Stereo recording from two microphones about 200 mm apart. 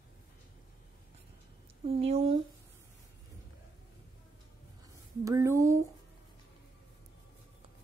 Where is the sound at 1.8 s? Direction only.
30° right (ahead or behind).